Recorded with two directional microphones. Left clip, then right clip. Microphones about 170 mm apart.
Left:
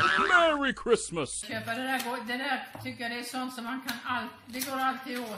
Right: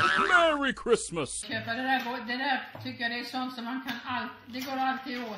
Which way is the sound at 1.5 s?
20° left (ahead or behind).